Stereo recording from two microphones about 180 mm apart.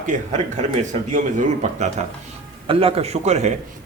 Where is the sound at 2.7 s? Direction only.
30° right (ahead or behind).